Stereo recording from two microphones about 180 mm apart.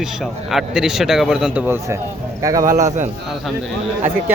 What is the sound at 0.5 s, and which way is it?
A man's voice, 5° right (ahead or behind).